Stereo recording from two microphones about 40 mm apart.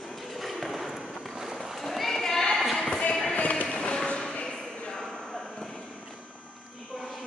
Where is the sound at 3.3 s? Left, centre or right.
Left.